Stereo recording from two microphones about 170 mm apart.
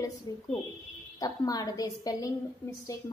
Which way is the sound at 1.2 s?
20° left (ahead or behind).